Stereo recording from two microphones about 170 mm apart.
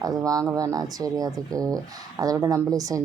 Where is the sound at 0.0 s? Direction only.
20° right (ahead or behind).